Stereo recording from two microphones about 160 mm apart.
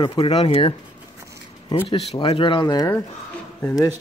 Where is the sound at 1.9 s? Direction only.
35° left (ahead or behind).